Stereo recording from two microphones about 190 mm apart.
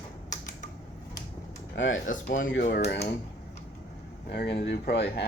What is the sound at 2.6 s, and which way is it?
Speech, 55° left (ahead or behind).